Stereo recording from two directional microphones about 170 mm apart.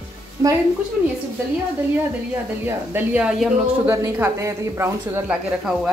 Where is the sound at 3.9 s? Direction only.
15° right (ahead or behind).